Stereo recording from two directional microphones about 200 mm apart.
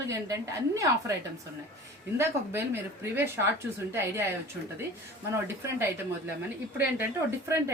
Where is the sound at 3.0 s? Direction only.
10° right (ahead or behind).